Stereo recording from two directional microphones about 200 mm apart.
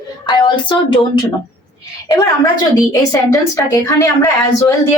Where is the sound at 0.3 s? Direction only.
25° left (ahead or behind).